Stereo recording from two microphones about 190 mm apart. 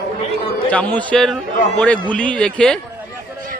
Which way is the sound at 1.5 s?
40° left (ahead or behind).